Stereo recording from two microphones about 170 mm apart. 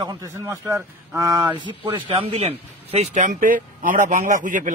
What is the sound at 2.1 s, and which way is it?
A man's voice, 35° right (ahead or behind).